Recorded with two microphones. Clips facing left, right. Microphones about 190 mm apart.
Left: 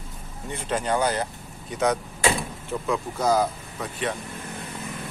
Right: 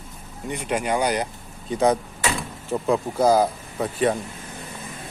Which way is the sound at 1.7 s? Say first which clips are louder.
Right 4 dB; 30° right (ahead or behind).